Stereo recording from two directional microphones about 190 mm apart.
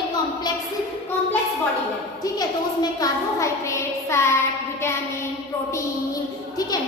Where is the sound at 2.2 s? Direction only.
20° left (ahead or behind).